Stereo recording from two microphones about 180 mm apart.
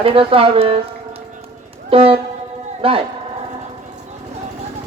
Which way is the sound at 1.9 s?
30° right (ahead or behind).